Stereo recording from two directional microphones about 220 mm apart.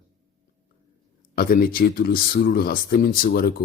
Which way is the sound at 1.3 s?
40° left (ahead or behind).